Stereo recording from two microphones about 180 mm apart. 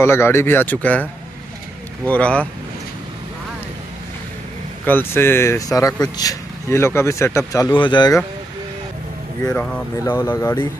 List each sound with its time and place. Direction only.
0.0 s speech: 15° left (ahead or behind)
2.0 s speech: 5° left (ahead or behind)
4.8 s speech: 10° left (ahead or behind)
9.5 s speech: 10° left (ahead or behind)